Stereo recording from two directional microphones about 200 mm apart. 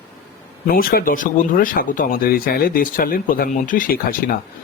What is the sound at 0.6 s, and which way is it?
Speech, 50° left (ahead or behind).